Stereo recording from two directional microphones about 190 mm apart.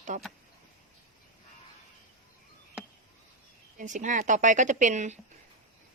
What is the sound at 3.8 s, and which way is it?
A woman's voice, 40° right (ahead or behind).